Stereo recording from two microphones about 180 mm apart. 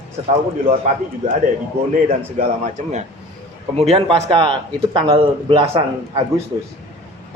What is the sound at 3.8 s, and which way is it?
Speech, 35° right (ahead or behind).